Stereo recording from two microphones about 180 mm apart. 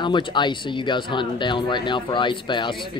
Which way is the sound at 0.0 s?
25° left (ahead or behind).